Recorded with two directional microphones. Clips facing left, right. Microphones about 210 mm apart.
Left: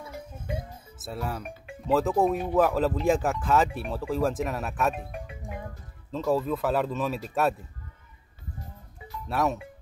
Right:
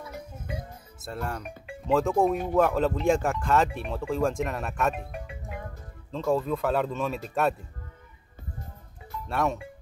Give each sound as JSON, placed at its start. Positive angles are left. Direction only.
{"t": 0.9, "sound": "speech", "side_deg": 5}
{"t": 6.1, "sound": "speech", "side_deg": 5}
{"t": 9.3, "sound": "speech", "side_deg": 0}